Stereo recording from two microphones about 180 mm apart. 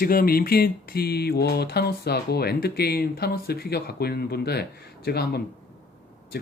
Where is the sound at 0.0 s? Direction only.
55° left (ahead or behind).